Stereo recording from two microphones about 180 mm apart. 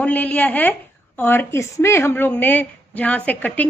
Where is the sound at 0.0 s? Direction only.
10° left (ahead or behind).